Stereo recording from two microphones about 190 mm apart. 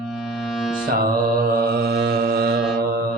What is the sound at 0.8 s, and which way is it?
Music, 50° right (ahead or behind).